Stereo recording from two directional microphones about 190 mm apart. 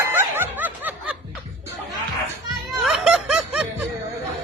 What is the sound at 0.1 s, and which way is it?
Snicker, 10° right (ahead or behind).